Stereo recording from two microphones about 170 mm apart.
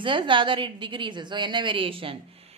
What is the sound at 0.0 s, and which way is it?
A woman's voice, 30° right (ahead or behind).